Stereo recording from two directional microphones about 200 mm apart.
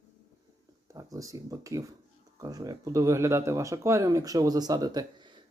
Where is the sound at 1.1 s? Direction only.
15° right (ahead or behind).